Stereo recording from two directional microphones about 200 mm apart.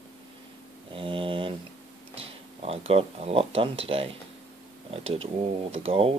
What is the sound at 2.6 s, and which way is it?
Speech, 30° right (ahead or behind).